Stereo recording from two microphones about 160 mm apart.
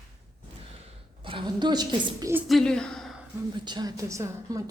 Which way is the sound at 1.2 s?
30° right (ahead or behind).